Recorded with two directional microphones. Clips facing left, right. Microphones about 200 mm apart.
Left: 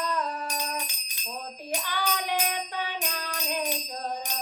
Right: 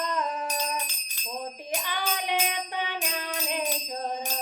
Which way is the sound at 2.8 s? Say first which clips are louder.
Right 1 dB; 20° right (ahead or behind).